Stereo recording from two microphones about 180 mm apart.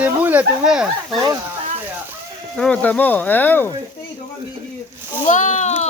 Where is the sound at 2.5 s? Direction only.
5° left (ahead or behind).